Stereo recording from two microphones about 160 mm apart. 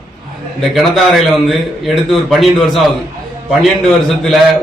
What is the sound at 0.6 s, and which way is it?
A man's voice, centre (ahead or behind).